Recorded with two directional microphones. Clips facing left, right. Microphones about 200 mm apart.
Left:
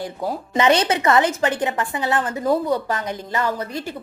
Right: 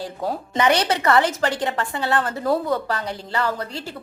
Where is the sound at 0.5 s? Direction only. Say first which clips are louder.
Left 2 dB; 25° left (ahead or behind).